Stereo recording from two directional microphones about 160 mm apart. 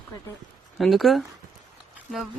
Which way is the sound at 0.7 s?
Centre (ahead or behind).